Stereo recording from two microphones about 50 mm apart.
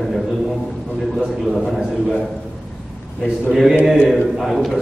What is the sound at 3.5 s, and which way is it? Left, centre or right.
A man's voice, centre.